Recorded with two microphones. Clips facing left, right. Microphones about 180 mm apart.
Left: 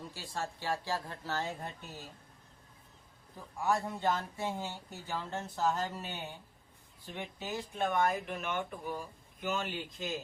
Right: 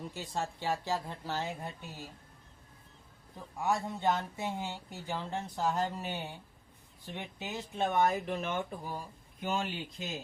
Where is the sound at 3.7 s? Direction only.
20° right (ahead or behind).